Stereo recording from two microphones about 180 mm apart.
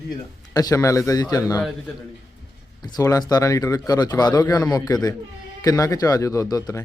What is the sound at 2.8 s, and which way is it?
Speech, 20° left (ahead or behind).